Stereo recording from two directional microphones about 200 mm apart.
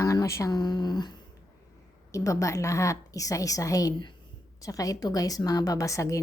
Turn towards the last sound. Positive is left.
turn(degrees=15)  # may be behind; listen again after turning